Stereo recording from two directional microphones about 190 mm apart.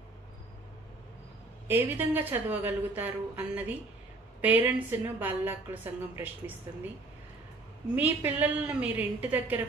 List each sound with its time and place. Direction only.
1.7 s a woman's voice: 10° right (ahead or behind)
7.9 s a woman's voice: 10° right (ahead or behind)